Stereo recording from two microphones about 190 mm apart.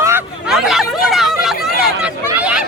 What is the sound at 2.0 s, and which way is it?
Speech, 5° right (ahead or behind).